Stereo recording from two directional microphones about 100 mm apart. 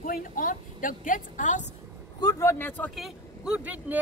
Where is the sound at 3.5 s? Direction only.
15° right (ahead or behind).